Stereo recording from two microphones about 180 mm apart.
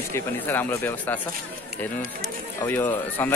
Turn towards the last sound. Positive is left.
turn(degrees=10)  # may be behind; listen again after turning